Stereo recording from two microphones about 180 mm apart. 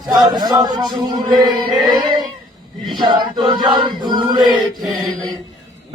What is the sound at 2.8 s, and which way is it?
Chant, centre (ahead or behind).